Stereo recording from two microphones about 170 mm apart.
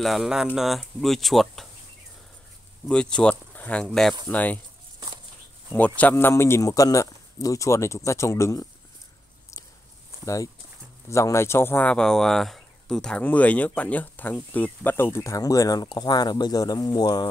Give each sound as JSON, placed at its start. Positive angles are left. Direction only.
{"t": 0.0, "sound": "speech", "side_deg": 0}
{"t": 2.9, "sound": "speech", "side_deg": 5}
{"t": 5.7, "sound": "speech", "side_deg": 10}
{"t": 10.2, "sound": "speech", "side_deg": 20}